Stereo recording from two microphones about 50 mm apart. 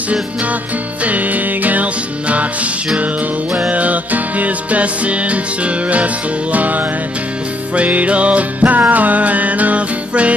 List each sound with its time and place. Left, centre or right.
1.0 s music: right
3.7 s music: right